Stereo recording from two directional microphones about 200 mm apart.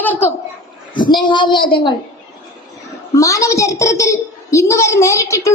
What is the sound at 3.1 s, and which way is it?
A woman's voice, 15° left (ahead or behind).